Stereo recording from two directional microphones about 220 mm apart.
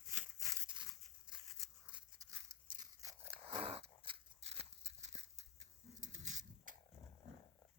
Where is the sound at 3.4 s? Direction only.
25° right (ahead or behind).